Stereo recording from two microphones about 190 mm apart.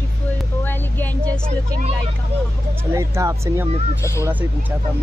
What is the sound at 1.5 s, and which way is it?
Speech, 35° right (ahead or behind).